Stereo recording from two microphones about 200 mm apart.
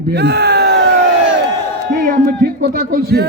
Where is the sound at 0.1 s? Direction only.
55° right (ahead or behind).